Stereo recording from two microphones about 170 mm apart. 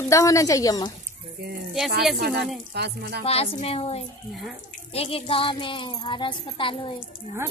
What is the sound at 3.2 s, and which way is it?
A woman's voice, 35° left (ahead or behind).